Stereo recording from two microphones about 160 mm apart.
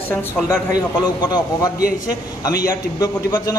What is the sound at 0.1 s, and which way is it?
Speech, 15° left (ahead or behind).